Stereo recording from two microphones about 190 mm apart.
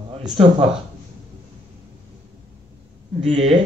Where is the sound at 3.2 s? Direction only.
30° right (ahead or behind).